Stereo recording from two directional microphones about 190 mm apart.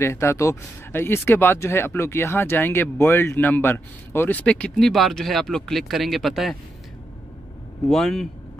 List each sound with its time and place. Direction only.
0.0 s speech: 15° left (ahead or behind)
7.9 s speech: centre (ahead or behind)